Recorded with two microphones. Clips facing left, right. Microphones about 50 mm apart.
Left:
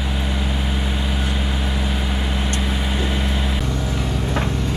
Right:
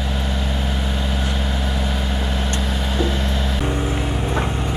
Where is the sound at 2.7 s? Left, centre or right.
Left.